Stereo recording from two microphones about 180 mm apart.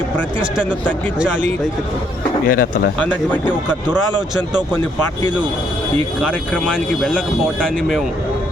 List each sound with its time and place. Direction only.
2.5 s speech: 55° left (ahead or behind)
3.0 s speech: 10° left (ahead or behind)
3.4 s speech: 25° right (ahead or behind)
6.5 s speech: 5° left (ahead or behind)